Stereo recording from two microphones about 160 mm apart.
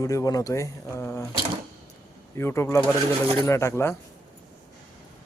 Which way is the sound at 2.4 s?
15° left (ahead or behind).